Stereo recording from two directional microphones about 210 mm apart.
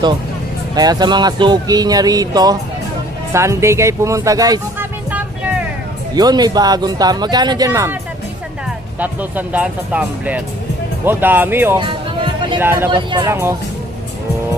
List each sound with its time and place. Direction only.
0.8 s speech: 20° right (ahead or behind)
6.1 s speech: 20° right (ahead or behind)
9.0 s speech: 5° right (ahead or behind)
11.8 s music: 25° right (ahead or behind)
12.5 s speech: 10° right (ahead or behind)
12.9 s speech: 20° right (ahead or behind)